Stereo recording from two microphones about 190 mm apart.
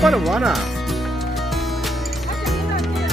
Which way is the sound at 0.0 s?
Centre (ahead or behind).